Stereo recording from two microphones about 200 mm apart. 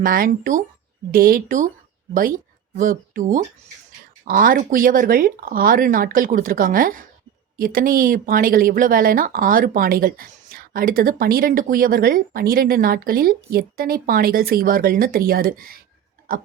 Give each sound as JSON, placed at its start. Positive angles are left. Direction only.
{"t": 0.0, "sound": "speech", "side_deg": -45}
{"t": 2.7, "sound": "speech", "side_deg": -40}